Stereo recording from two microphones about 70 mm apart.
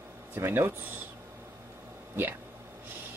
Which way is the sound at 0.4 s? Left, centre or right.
Right.